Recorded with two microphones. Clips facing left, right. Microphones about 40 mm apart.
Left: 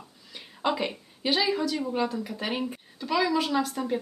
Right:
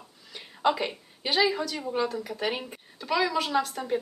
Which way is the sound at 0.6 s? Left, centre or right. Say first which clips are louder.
Right 2 dB; centre.